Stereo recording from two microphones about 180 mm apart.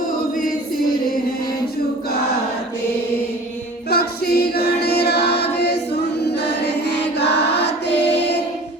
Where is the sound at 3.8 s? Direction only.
60° left (ahead or behind).